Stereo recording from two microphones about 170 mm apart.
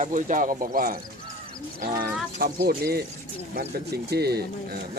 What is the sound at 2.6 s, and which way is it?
Speech, 70° right (ahead or behind).